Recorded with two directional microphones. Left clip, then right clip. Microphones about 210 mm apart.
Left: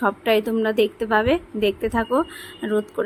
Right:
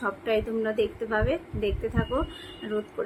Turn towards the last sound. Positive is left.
turn(degrees=50)  # may be behind; listen again after turning